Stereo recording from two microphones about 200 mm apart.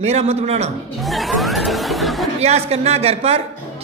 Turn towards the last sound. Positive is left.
turn(degrees=-30)  # may be behind; listen again after turning